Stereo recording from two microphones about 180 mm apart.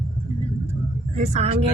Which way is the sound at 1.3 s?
35° right (ahead or behind).